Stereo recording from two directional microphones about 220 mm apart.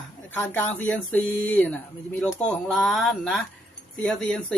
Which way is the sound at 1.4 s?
5° left (ahead or behind).